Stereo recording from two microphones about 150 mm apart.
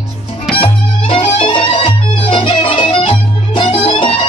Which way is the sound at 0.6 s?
40° left (ahead or behind).